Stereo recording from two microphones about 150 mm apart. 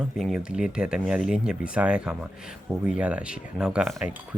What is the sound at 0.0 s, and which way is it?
Speech, 5° right (ahead or behind).